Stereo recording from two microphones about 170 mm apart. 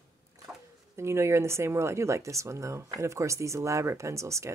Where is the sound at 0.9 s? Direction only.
15° right (ahead or behind).